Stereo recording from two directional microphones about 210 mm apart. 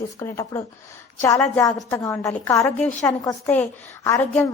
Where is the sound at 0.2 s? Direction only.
15° left (ahead or behind).